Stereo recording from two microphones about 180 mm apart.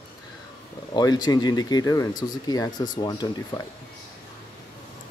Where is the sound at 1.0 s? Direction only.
20° left (ahead or behind).